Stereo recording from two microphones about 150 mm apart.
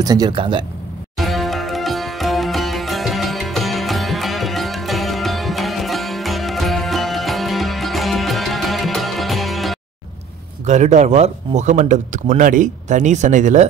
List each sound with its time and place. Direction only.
0.0 s speech: 25° right (ahead or behind)
1.1 s sitar: centre (ahead or behind)
10.6 s speech: 50° right (ahead or behind)